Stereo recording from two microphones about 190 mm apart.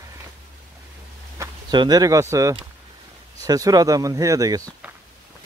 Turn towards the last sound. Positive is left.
turn(degrees=-20)  # may be behind; listen again after turning